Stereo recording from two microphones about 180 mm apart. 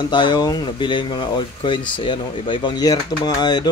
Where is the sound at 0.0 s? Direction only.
25° left (ahead or behind).